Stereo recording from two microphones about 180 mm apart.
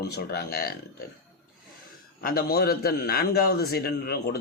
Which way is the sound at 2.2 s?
60° left (ahead or behind).